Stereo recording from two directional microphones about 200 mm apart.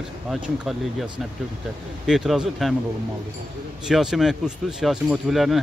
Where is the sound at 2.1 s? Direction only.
Centre (ahead or behind).